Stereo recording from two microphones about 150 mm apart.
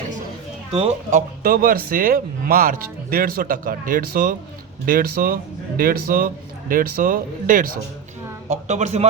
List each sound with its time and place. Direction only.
0.7 s a man's voice: 45° right (ahead or behind)
1.5 s speech: 70° right (ahead or behind)
6.7 s speech: 70° right (ahead or behind)
8.4 s a man's voice: 50° right (ahead or behind)